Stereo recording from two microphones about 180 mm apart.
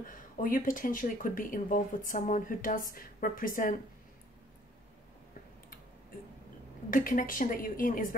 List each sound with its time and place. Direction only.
0.0 s speech: 50° left (ahead or behind)
6.9 s speech: 50° left (ahead or behind)